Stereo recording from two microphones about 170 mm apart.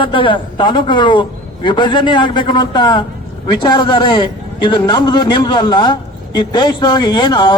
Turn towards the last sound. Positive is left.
turn(degrees=30)  # may be behind; listen again after turning